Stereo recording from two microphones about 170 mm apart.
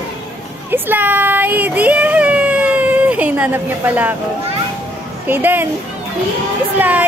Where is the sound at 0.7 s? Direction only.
10° right (ahead or behind).